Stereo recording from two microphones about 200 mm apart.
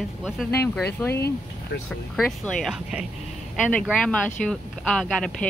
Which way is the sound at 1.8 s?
5° left (ahead or behind).